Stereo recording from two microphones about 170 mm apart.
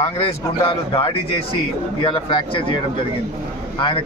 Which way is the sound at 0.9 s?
30° left (ahead or behind).